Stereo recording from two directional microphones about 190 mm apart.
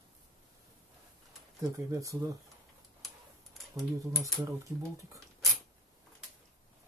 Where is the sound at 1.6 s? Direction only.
15° right (ahead or behind).